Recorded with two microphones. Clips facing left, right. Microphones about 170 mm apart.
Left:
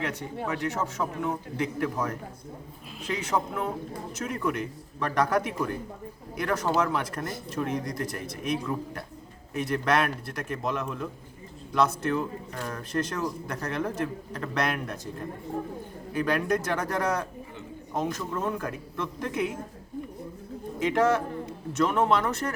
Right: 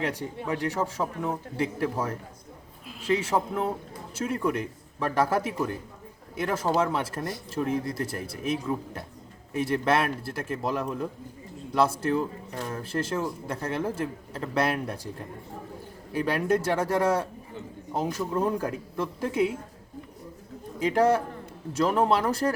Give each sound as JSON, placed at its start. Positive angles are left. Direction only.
{"t": 0.0, "sound": "a man's voice", "side_deg": -35}
{"t": 16.1, "sound": "speech", "side_deg": -30}
{"t": 17.9, "sound": "speech", "side_deg": -10}
{"t": 18.3, "sound": "a man's voice", "side_deg": -30}
{"t": 20.7, "sound": "a man's voice", "side_deg": -35}